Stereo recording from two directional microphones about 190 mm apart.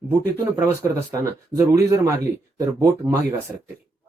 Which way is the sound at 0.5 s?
15° right (ahead or behind).